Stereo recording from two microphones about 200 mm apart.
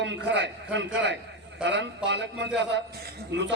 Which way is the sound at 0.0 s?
60° right (ahead or behind).